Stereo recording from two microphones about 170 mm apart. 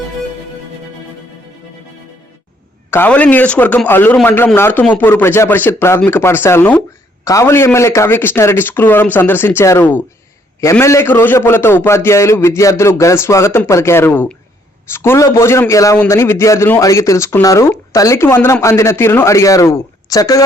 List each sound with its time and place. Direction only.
2.9 s a man's voice: 10° left (ahead or behind)